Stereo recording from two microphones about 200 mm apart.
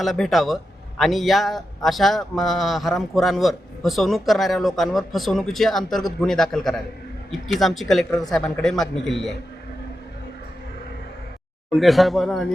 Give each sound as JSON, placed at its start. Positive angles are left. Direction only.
{"t": 0.0, "sound": "a man's voice", "side_deg": 0}
{"t": 11.8, "sound": "a man's voice", "side_deg": 0}